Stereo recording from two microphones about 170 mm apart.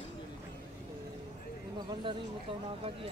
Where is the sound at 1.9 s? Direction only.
30° right (ahead or behind).